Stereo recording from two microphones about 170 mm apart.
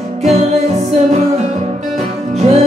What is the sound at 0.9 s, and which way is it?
Music, 40° right (ahead or behind).